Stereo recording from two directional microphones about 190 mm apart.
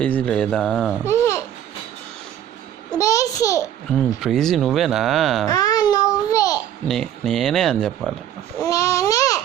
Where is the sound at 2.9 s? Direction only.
15° left (ahead or behind).